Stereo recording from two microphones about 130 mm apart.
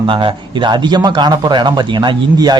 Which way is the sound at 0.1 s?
40° right (ahead or behind).